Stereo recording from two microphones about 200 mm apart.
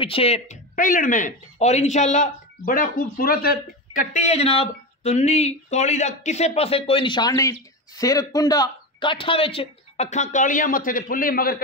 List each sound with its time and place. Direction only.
0.0 s speech: 30° left (ahead or behind); by 11.5 s 45° left (ahead or behind)